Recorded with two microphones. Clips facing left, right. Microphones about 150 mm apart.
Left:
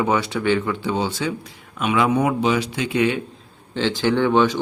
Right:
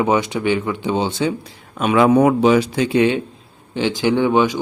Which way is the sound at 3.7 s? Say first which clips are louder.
Right 2 dB; 15° right (ahead or behind).